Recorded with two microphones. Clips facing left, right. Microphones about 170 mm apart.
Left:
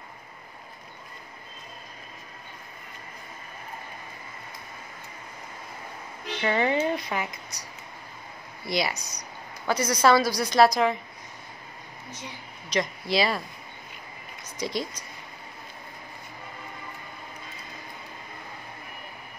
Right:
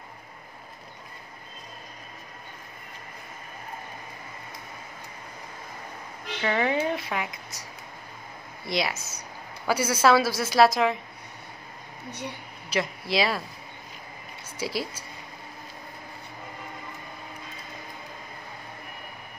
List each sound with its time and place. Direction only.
6.4 s a woman's voice: centre (ahead or behind)
8.6 s a woman's voice: centre (ahead or behind)
12.1 s speech: 65° right (ahead or behind)
12.6 s speech: 5° right (ahead or behind)
14.6 s a woman's voice: 5° right (ahead or behind)